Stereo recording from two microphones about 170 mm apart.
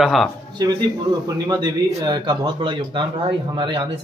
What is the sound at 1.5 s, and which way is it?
Speech, 25° right (ahead or behind).